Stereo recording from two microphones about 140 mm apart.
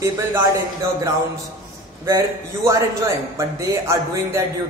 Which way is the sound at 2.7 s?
20° right (ahead or behind).